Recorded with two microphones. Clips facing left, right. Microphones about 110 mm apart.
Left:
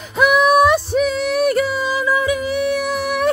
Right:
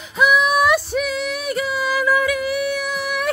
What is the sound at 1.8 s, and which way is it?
Music, 25° left (ahead or behind).